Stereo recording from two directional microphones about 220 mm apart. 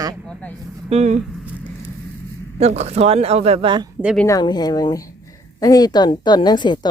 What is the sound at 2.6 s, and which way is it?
Speech, 30° right (ahead or behind).